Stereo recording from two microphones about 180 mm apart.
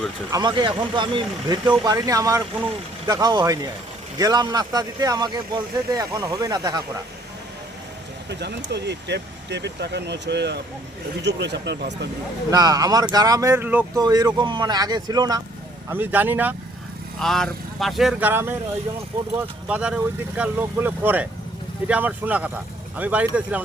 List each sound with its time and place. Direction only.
0.3 s speech: 20° right (ahead or behind)
8.3 s speech: 70° right (ahead or behind)
12.5 s speech: 20° right (ahead or behind)
13.9 s speech: 20° right (ahead or behind)
15.9 s speech: 10° right (ahead or behind)
17.2 s speech: centre (ahead or behind)
19.6 s speech: 5° right (ahead or behind)